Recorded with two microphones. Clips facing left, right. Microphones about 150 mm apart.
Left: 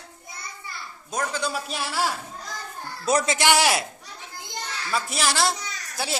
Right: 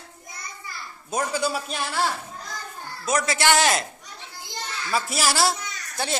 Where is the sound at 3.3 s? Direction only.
15° left (ahead or behind).